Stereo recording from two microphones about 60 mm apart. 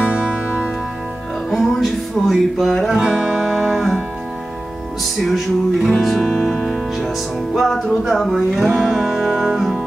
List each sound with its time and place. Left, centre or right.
1.5 s music: centre
3.0 s music: centre
5.2 s music: centre